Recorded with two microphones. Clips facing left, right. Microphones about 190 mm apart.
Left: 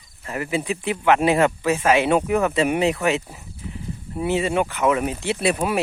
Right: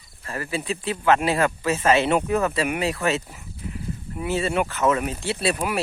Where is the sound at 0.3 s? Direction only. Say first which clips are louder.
Left 3 dB; 20° left (ahead or behind).